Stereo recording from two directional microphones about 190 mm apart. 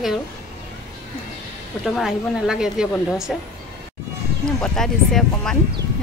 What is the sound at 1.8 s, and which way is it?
A woman's voice, centre (ahead or behind).